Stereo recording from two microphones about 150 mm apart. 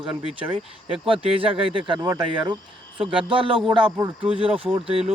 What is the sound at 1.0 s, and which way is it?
Speech, 35° right (ahead or behind).